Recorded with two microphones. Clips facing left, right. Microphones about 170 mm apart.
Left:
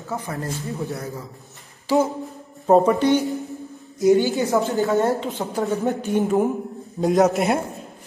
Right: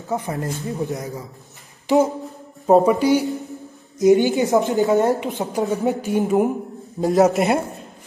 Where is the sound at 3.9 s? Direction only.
20° right (ahead or behind); by 7.6 s centre (ahead or behind).